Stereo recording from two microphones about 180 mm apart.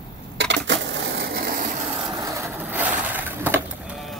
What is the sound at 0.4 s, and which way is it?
Crushing, 80° right.